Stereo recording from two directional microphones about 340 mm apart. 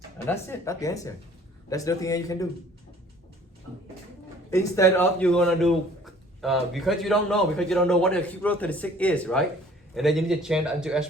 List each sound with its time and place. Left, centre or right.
0.3 s speech: centre
4.5 s a man's voice: centre